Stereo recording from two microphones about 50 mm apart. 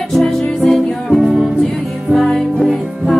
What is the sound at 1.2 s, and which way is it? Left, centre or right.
Music, centre.